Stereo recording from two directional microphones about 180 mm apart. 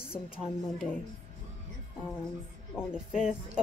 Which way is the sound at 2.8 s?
5° right (ahead or behind).